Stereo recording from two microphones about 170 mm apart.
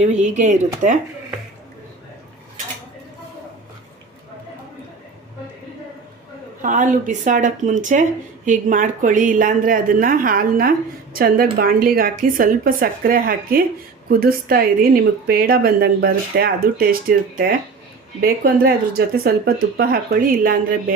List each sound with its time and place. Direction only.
0.0 s speech: 45° right (ahead or behind)
6.6 s speech: 50° right (ahead or behind)